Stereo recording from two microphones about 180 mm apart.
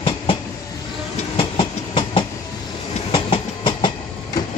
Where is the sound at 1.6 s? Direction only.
25° left (ahead or behind).